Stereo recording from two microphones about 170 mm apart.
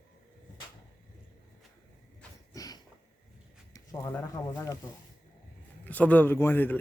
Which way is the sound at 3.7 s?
15° left (ahead or behind).